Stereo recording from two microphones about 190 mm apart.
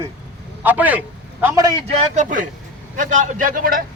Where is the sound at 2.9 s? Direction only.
40° right (ahead or behind).